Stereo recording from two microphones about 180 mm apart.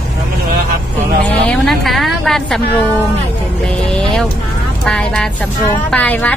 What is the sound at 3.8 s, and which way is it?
A woman's voice, 5° left (ahead or behind).